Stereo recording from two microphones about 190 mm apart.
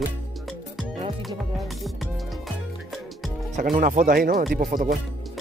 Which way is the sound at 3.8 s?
45° right (ahead or behind).